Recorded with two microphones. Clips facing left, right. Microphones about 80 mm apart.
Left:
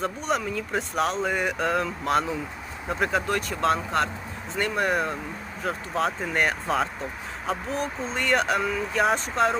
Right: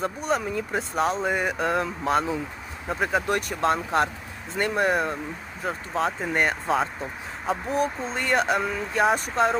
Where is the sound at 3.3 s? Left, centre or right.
Centre.